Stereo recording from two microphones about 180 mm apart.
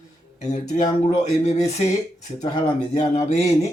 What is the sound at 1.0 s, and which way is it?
Speech, 40° left (ahead or behind).